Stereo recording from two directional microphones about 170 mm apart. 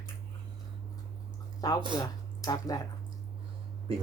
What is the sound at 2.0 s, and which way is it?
Speech, 20° left (ahead or behind).